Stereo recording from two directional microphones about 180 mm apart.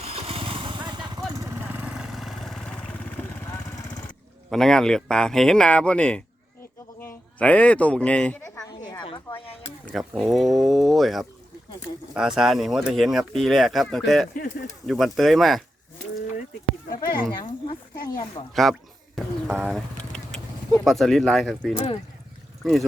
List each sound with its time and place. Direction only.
0.0 s vehicle: 35° right (ahead or behind); by 4.0 s 15° left (ahead or behind)
4.4 s speech: 5° left (ahead or behind)
7.0 s a sound: 10° left (ahead or behind)
9.0 s a sound: 30° left (ahead or behind)
9.8 s speech: centre (ahead or behind)
14.3 s speech: 50° left (ahead or behind)
14.8 s speech: centre (ahead or behind)
16.9 s speech: 55° left (ahead or behind)
18.5 s speech: centre (ahead or behind)